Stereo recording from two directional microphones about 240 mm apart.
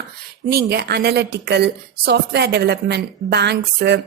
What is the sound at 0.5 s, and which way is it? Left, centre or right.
A woman's voice, right.